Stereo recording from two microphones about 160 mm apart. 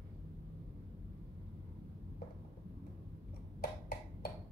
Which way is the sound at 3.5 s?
70° left (ahead or behind).